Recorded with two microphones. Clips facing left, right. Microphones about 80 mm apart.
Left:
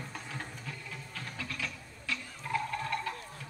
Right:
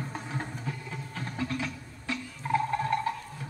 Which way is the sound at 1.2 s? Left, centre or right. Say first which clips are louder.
Right 7 dB; right.